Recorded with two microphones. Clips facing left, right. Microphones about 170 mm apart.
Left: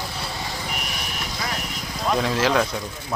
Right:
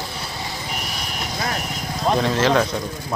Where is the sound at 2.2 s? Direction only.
5° left (ahead or behind).